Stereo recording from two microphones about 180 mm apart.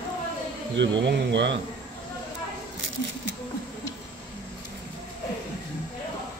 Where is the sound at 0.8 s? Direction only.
75° right (ahead or behind).